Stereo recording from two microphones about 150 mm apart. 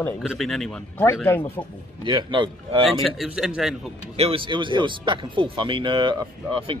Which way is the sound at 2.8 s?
Centre (ahead or behind).